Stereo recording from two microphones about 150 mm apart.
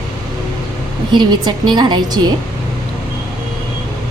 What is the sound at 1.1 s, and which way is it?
A woman's voice, 30° right (ahead or behind).